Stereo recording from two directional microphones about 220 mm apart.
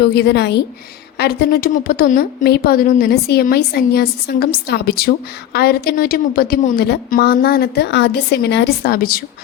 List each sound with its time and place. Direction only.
0.0 s a woman's voice: 50° left (ahead or behind)